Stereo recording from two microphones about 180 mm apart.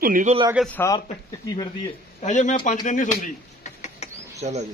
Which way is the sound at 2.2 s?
45° left (ahead or behind).